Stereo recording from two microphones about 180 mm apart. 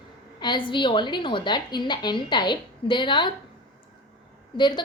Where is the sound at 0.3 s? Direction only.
25° left (ahead or behind).